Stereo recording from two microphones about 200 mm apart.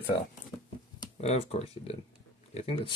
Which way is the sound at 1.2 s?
30° left (ahead or behind).